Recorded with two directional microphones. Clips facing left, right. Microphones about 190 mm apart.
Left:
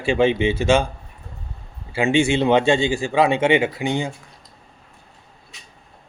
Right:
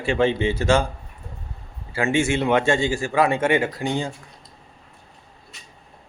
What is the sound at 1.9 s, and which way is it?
Speech, 25° left (ahead or behind).